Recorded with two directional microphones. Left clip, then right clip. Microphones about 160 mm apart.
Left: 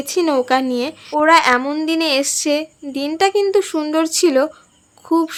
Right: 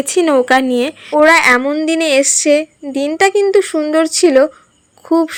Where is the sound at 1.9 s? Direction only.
20° right (ahead or behind).